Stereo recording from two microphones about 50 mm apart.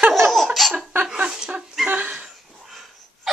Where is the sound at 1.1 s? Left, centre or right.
Centre.